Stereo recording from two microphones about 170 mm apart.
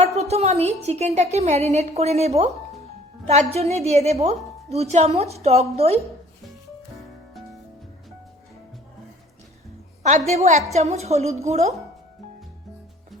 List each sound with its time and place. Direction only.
0.0 s a woman's voice: 40° right (ahead or behind)
10.0 s a woman's voice: 45° right (ahead or behind)